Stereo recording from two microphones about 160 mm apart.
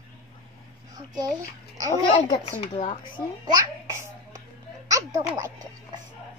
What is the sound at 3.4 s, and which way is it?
Speech, 20° right (ahead or behind).